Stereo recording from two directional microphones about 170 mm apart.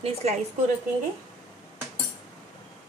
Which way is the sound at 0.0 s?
40° right (ahead or behind).